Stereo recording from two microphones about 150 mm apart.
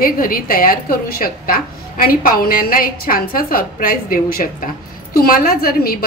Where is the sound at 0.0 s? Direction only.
75° left (ahead or behind).